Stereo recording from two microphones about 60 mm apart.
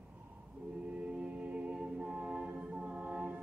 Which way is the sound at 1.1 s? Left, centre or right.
Centre.